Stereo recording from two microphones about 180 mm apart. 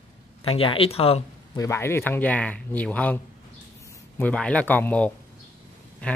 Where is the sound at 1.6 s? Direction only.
15° left (ahead or behind).